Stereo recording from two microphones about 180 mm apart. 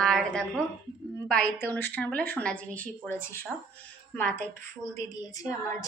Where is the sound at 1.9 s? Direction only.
10° left (ahead or behind).